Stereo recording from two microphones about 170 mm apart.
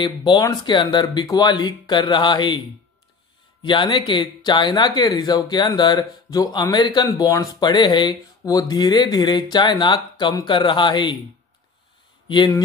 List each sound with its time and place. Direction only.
0.0 s speech: 25° left (ahead or behind)
3.6 s speech: 30° left (ahead or behind)
12.3 s speech: 25° left (ahead or behind)